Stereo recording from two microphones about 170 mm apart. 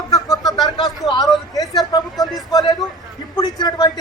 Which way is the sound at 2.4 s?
20° left (ahead or behind).